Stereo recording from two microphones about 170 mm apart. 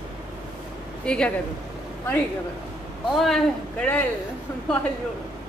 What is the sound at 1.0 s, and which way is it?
Speech, 5° left (ahead or behind).